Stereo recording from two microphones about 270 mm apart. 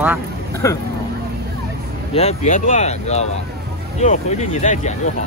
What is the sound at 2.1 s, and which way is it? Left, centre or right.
Speech, left.